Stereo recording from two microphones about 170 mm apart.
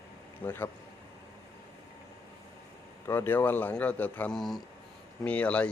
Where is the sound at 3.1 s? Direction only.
10° left (ahead or behind).